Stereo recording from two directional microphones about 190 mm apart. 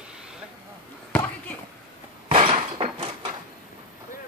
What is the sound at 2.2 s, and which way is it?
Breaking, 30° right (ahead or behind).